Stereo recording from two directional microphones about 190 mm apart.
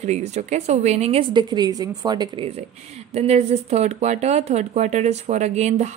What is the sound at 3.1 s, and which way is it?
A woman's voice, 35° right (ahead or behind).